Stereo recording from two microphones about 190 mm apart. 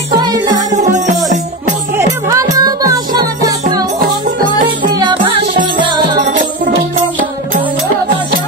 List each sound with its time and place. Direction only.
0.2 s music: 20° right (ahead or behind)
2.2 s music: 20° right (ahead or behind)
4.8 s music: 25° right (ahead or behind)
6.2 s music: 45° right (ahead or behind)